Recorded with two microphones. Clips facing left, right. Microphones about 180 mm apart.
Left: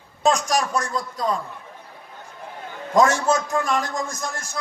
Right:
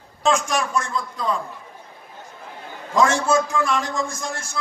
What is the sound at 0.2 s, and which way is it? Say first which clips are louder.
A man's voice: left 1 dB; 40° left (ahead or behind).